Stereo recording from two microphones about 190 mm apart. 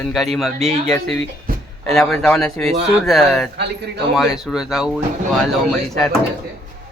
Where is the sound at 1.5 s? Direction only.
50° right (ahead or behind).